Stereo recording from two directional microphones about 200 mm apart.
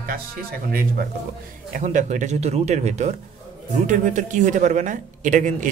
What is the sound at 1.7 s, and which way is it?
A man's voice, 35° right (ahead or behind).